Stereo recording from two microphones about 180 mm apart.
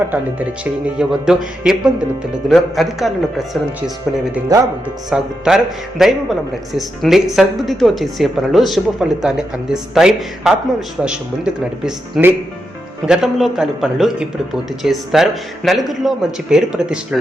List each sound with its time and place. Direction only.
0.1 s speech: 10° right (ahead or behind)
4.5 s speech: 20° right (ahead or behind)
5.1 s speech: centre (ahead or behind)